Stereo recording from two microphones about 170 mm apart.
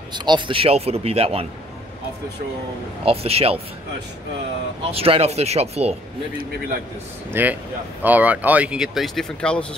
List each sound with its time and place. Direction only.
0.1 s a man's voice: 25° right (ahead or behind)
3.1 s a man's voice: 35° right (ahead or behind)
4.9 s a man's voice: 35° right (ahead or behind)
7.3 s speech: 10° right (ahead or behind); by 9.7 s 5° left (ahead or behind)